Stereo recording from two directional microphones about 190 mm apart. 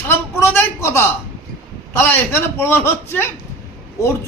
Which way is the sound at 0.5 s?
10° left (ahead or behind).